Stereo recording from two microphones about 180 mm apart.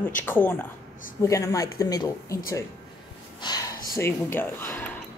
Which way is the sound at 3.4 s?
20° left (ahead or behind).